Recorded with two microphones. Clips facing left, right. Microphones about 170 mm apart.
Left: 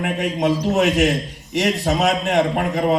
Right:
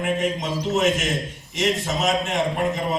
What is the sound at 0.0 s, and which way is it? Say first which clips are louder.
A man's voice: left 3 dB; 65° left (ahead or behind).